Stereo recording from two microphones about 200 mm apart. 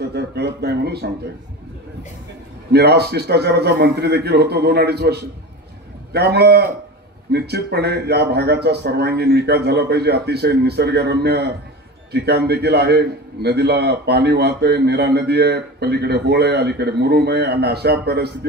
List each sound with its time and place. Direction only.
0.1 s a man's voice: 55° right (ahead or behind)
2.7 s a man's voice: 55° right (ahead or behind)
6.3 s a man's voice: 55° right (ahead or behind)